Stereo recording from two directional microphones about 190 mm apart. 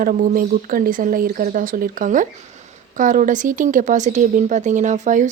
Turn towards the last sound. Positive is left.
turn(degrees=-40)  # may be behind; listen again after turning